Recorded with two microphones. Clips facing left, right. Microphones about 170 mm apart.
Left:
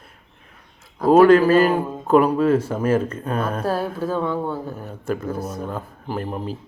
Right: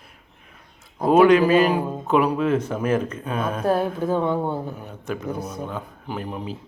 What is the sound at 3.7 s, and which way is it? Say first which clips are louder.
Speech: right 2 dB; 20° right (ahead or behind).